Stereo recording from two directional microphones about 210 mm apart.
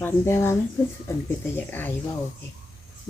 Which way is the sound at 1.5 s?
10° left (ahead or behind).